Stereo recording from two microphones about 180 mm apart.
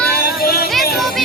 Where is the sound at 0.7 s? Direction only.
Centre (ahead or behind).